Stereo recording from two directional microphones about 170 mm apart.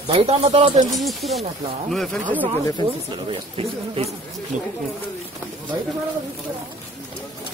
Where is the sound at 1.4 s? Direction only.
35° right (ahead or behind).